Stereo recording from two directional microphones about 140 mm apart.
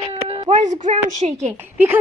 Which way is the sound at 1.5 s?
15° right (ahead or behind).